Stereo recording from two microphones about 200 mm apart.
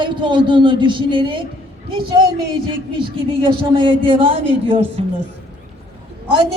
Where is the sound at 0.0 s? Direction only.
25° right (ahead or behind).